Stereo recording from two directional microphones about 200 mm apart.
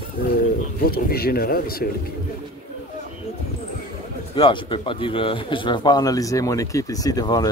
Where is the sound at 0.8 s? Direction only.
50° left (ahead or behind).